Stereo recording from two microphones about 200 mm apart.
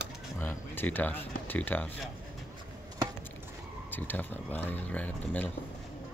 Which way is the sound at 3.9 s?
10° left (ahead or behind).